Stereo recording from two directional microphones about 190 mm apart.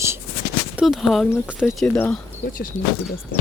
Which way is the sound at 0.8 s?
Centre (ahead or behind).